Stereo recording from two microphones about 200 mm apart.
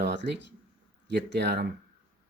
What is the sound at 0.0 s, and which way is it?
Speech, 60° right (ahead or behind).